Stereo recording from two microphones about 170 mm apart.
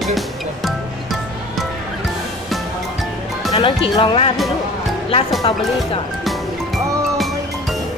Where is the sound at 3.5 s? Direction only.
35° left (ahead or behind).